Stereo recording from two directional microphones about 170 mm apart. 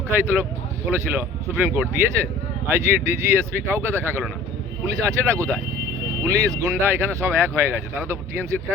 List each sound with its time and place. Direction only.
0.1 s speech: 15° right (ahead or behind)